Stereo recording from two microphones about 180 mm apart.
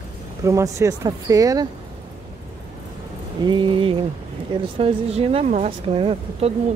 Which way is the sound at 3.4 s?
25° right (ahead or behind).